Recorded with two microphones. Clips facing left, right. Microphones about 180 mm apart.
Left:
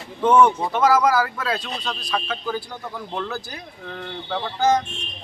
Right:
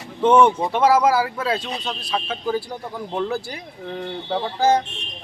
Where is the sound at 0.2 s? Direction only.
25° right (ahead or behind).